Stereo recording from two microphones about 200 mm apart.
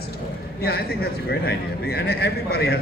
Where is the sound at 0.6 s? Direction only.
50° left (ahead or behind).